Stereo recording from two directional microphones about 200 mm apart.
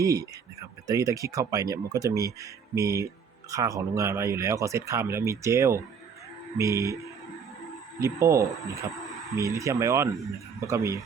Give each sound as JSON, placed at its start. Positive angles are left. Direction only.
{"t": 0.0, "sound": "speech", "side_deg": -15}
{"t": 8.0, "sound": "speech", "side_deg": -15}